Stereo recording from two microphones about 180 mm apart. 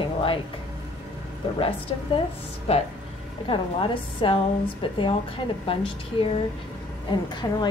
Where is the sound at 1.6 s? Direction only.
30° left (ahead or behind).